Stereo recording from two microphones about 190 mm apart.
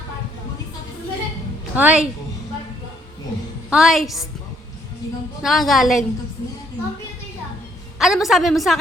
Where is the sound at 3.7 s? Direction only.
Centre (ahead or behind).